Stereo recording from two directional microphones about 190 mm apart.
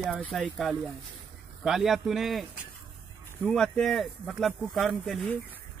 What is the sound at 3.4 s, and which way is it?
Speech, centre (ahead or behind).